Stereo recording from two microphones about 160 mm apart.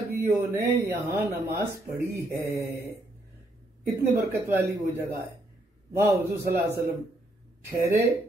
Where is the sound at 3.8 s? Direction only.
20° right (ahead or behind).